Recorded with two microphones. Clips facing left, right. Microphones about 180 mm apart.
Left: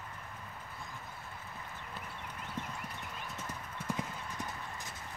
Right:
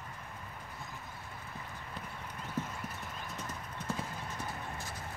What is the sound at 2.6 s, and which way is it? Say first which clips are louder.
Clip-clop: right 5 dB; 5° right (ahead or behind).